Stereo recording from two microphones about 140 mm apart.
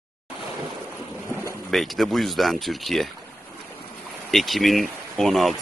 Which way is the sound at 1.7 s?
Centre (ahead or behind).